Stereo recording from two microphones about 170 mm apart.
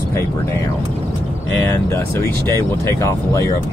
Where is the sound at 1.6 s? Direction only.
15° left (ahead or behind).